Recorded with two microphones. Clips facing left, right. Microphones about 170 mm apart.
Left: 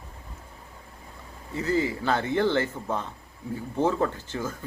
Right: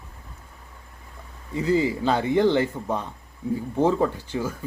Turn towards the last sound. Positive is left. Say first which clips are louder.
# right 4 dB
turn(degrees=-10)  # may be behind; listen again after turning